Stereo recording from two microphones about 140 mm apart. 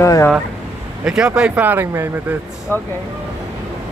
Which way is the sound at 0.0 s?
20° left (ahead or behind).